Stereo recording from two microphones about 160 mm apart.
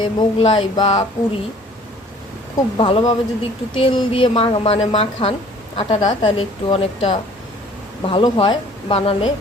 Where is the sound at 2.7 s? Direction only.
35° left (ahead or behind).